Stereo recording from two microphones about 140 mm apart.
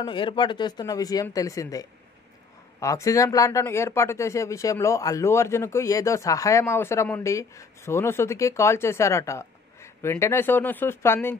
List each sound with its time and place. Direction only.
0.0 s speech: 35° left (ahead or behind); by 11.1 s 20° left (ahead or behind)